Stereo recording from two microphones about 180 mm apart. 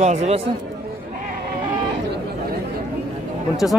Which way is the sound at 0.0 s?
40° right (ahead or behind).